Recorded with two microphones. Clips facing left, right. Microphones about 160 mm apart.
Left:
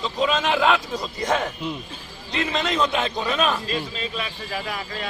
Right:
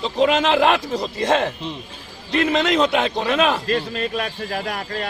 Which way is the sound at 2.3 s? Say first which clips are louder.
Right 6 dB; 65° right (ahead or behind).